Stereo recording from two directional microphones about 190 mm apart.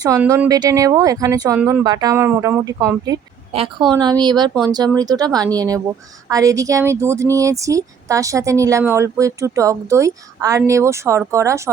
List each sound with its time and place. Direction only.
0.2 s speech: 15° right (ahead or behind)